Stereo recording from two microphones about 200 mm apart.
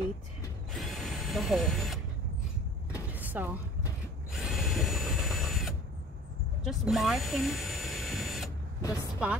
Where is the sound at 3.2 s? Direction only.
10° right (ahead or behind).